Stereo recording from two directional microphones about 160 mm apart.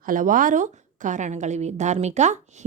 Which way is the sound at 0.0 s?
55° right (ahead or behind).